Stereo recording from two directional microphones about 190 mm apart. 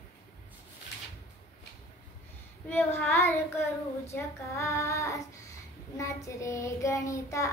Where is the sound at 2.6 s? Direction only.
10° left (ahead or behind).